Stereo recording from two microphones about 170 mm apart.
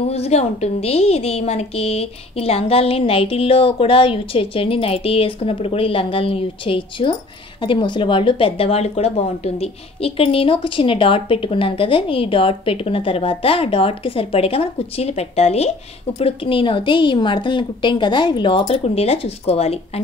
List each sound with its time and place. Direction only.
0.0 s a woman's voice: 40° left (ahead or behind)